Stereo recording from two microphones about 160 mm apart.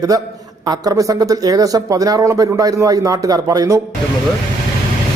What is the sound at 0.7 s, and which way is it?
Speech, 20° right (ahead or behind).